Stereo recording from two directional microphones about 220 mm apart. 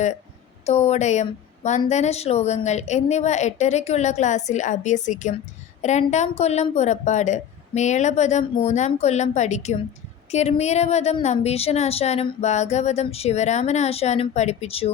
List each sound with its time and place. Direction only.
0.6 s a woman's voice: 30° left (ahead or behind)